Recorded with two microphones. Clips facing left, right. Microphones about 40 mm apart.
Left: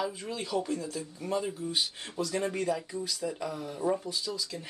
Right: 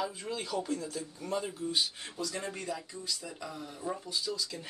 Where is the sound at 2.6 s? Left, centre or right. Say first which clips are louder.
Left 6 dB; centre.